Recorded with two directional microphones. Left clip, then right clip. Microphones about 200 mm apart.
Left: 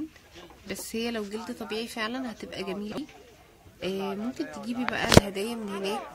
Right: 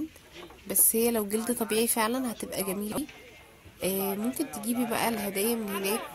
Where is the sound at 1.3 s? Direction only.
30° right (ahead or behind).